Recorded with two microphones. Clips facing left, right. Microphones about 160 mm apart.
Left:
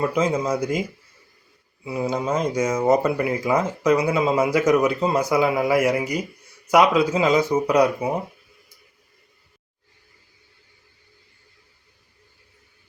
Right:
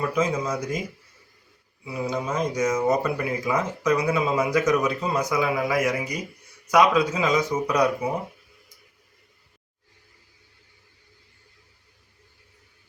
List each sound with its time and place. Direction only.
0.0 s speech: 30° left (ahead or behind)
1.8 s speech: 25° left (ahead or behind)